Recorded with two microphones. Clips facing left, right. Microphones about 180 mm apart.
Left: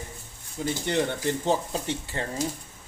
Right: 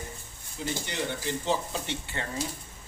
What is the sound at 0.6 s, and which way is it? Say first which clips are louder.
Speech: left 6 dB; 45° left (ahead or behind).